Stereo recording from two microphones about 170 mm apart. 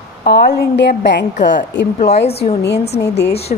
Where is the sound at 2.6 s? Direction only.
80° left.